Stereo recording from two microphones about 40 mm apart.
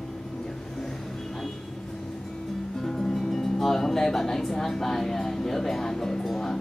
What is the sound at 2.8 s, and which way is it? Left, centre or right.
Speech, centre.